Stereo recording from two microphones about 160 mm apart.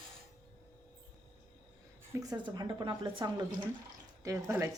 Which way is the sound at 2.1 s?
25° right (ahead or behind).